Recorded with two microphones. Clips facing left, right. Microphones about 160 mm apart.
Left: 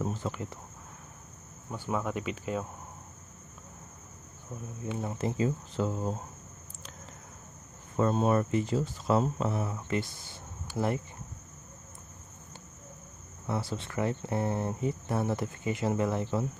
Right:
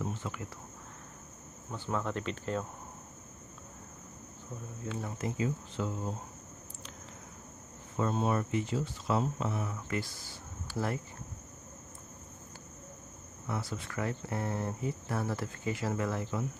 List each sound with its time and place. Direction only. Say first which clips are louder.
0.0 s speech: left 4 dB; 40° left (ahead or behind)
1.7 s speech: left 2 dB; 10° left (ahead or behind)
4.8 s speech: left 4 dB; 20° left (ahead or behind)
5.4 s speech: left 4 dB; 40° left (ahead or behind)
8.0 s speech: left 5 dB; 45° left (ahead or behind)
9.8 s speech: left 4 dB; 25° left (ahead or behind)
13.5 s speech: left 4 dB; 30° left (ahead or behind)